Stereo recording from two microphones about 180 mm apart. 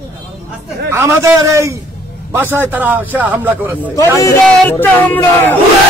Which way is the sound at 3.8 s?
15° left (ahead or behind).